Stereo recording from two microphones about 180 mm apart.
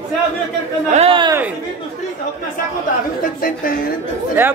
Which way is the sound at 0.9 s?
30° right (ahead or behind).